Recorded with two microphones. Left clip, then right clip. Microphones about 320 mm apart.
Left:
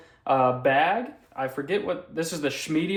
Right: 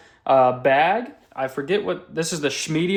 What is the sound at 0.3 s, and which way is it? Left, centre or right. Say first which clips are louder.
Speech: right 5 dB; right.